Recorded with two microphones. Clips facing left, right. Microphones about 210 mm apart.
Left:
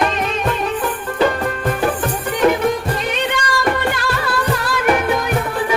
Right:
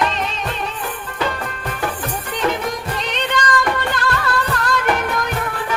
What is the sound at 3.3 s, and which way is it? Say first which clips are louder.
Music: left 1 dB; 10° left (ahead or behind).